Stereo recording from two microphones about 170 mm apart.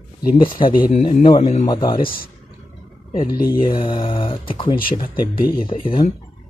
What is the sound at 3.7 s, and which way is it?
Speech, 30° left (ahead or behind).